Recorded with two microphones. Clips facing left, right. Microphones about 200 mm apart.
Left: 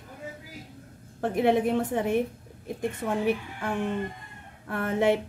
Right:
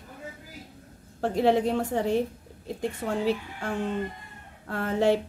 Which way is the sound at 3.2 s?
20° left (ahead or behind).